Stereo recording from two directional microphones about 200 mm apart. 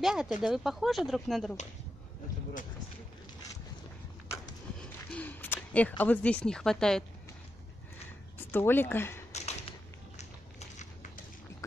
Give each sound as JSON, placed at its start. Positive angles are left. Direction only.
{"t": 0.0, "sound": "speech", "side_deg": -5}
{"t": 5.1, "sound": "a woman's voice", "side_deg": 10}
{"t": 8.4, "sound": "speech", "side_deg": 10}
{"t": 9.3, "sound": "a sound", "side_deg": 35}